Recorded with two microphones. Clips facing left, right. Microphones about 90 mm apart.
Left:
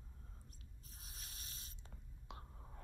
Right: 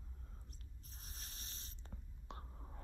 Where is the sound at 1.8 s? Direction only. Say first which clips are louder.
Right 7 dB; 40° right (ahead or behind).